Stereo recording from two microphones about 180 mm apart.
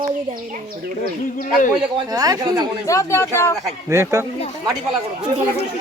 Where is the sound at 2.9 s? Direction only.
15° left (ahead or behind).